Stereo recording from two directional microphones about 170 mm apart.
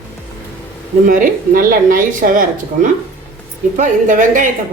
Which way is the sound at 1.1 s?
55° right (ahead or behind).